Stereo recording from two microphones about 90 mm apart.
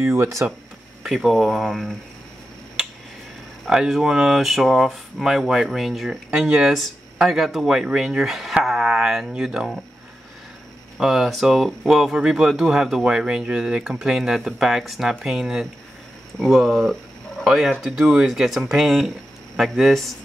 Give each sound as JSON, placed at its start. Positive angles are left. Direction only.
{"t": 0.0, "sound": "speech", "side_deg": -30}
{"t": 1.0, "sound": "speech", "side_deg": 0}
{"t": 3.6, "sound": "speech", "side_deg": -5}
{"t": 11.0, "sound": "speech", "side_deg": -5}